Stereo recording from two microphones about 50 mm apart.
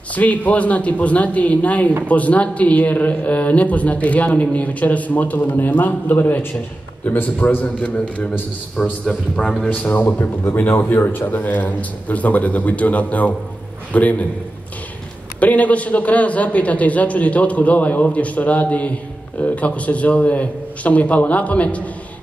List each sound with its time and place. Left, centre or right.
0.1 s a man's voice: left
8.8 s a man's voice: centre
9.4 s a man's voice: left
10.1 s a man's voice: left
15.4 s a man's voice: left